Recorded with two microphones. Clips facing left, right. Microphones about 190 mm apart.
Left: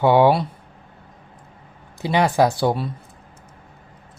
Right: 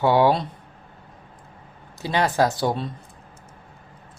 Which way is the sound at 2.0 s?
15° left (ahead or behind).